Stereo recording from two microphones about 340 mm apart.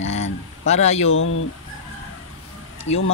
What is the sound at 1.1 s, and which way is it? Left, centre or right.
Speech, left.